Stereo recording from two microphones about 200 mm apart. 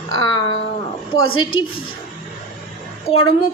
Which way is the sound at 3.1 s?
25° left (ahead or behind).